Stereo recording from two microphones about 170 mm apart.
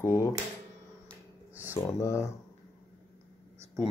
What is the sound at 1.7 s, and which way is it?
Speech, 15° left (ahead or behind).